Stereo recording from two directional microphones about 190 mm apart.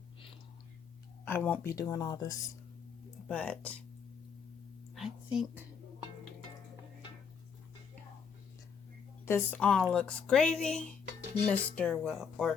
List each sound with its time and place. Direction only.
1.3 s speech: 10° left (ahead or behind)
3.2 s speech: 5° left (ahead or behind)
4.9 s a sound: centre (ahead or behind)
9.2 s speech: 10° left (ahead or behind)